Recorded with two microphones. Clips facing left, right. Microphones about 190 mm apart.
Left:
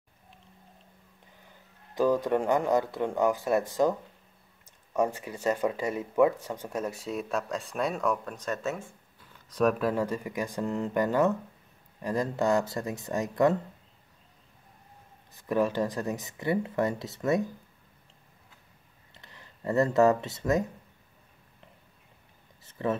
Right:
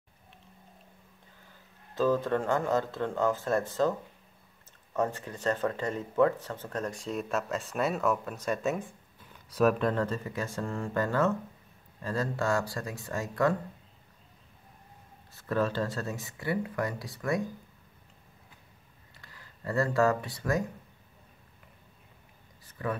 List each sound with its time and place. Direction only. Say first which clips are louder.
2.0 s speech: left 2 dB; 15° left (ahead or behind)
4.9 s speech: left 3 dB; 10° left (ahead or behind); by 8.9 s 15° right (ahead or behind)
9.5 s speech: even; 5° right (ahead or behind); by 13.6 s 20° left (ahead or behind)
15.3 s speech: left 3 dB; 15° left (ahead or behind)
19.1 s speech: left 2 dB; 20° left (ahead or behind)
22.6 s a sound: left 4 dB; 25° left (ahead or behind)